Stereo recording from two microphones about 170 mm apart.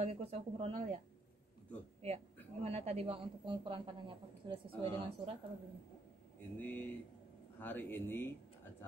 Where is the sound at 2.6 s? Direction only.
40° right (ahead or behind).